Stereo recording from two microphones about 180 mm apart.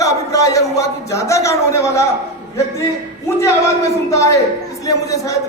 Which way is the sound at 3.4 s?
15° left (ahead or behind).